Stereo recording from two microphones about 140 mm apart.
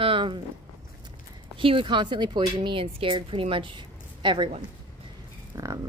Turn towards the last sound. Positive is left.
turn(degrees=-25)  # may be behind; listen again after turning